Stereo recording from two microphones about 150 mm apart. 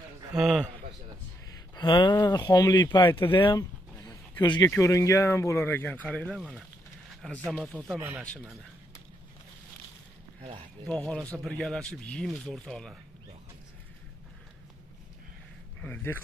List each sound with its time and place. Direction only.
0.4 s speech: centre (ahead or behind)
1.8 s speech: 30° left (ahead or behind)
4.0 s a sound: 30° left (ahead or behind)
4.6 s speech: 20° left (ahead or behind); by 8.0 s centre (ahead or behind)
10.9 s speech: 5° left (ahead or behind)
15.8 s speech: 10° left (ahead or behind)